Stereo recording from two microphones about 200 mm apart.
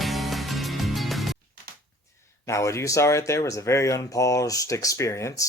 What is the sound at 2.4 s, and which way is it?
Speech, 15° left (ahead or behind).